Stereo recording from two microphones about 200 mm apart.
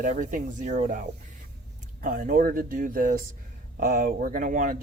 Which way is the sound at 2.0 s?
45° right (ahead or behind).